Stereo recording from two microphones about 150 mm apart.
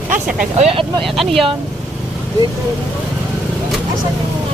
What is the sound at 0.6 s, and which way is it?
Speech, 40° right (ahead or behind).